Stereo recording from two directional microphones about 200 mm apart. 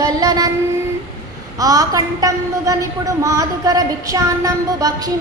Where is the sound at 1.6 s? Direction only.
15° right (ahead or behind).